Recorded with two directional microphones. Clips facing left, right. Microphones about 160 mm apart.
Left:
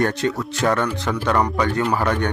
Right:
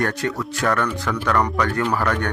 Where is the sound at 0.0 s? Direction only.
20° left (ahead or behind).